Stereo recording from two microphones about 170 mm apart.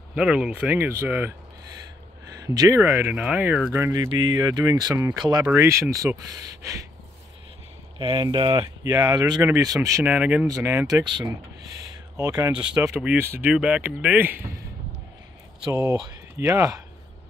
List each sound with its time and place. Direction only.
0.1 s speech: 5° right (ahead or behind)
2.4 s speech: 20° right (ahead or behind)
5.4 s speech: 15° right (ahead or behind)
8.0 s speech: 30° right (ahead or behind)
9.8 s speech: 10° right (ahead or behind)
10.4 s speech: 15° right (ahead or behind)
12.2 s speech: 20° right (ahead or behind)
12.8 s speech: 10° right (ahead or behind)
15.7 s speech: 15° right (ahead or behind)